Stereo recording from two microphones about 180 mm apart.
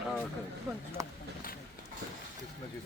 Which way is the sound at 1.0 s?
20° right (ahead or behind).